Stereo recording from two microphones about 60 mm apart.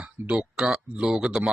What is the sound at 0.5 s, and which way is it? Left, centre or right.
Speech, centre.